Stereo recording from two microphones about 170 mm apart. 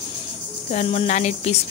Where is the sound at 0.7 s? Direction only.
35° left (ahead or behind).